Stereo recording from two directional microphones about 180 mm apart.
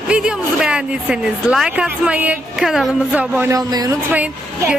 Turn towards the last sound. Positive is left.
turn(degrees=-10)  # may be behind; listen again after turning